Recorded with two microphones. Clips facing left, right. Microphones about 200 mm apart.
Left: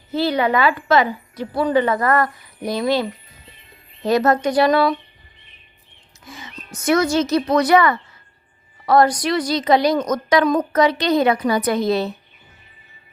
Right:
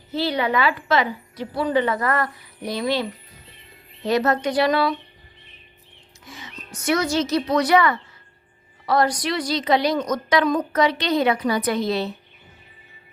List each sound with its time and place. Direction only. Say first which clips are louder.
0.1 s a woman's voice: left 4 dB; 50° left (ahead or behind)
6.7 s a woman's voice: left 4 dB; 50° left (ahead or behind)